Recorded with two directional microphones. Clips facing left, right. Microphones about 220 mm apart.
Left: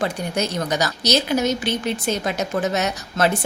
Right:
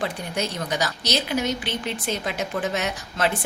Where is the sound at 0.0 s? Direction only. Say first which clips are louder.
Left 4 dB; 40° left (ahead or behind).